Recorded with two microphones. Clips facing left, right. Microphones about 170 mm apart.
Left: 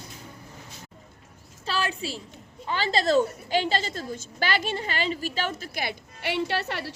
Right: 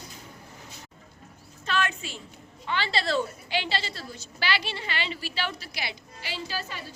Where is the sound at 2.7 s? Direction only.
40° left (ahead or behind).